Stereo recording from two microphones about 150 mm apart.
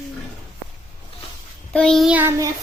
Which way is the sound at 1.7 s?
5° left (ahead or behind).